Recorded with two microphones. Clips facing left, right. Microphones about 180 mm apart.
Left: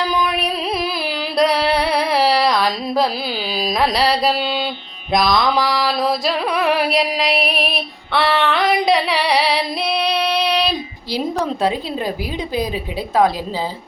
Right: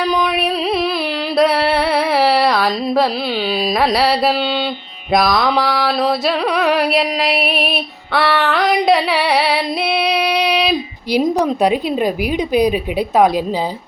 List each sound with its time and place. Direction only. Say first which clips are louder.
0.1 s music: right 3 dB; centre (ahead or behind)
5.6 s a sound: right 2 dB; 65° right (ahead or behind)
5.9 s music: right 3 dB; centre (ahead or behind)